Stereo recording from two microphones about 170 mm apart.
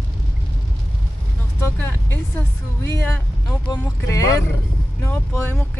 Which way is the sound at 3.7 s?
20° left (ahead or behind).